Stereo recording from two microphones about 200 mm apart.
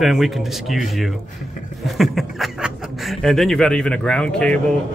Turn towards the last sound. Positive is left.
turn(degrees=5)  # may be behind; listen again after turning